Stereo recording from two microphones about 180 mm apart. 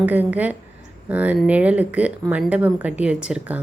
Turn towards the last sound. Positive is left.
turn(degrees=-5)  # may be behind; listen again after turning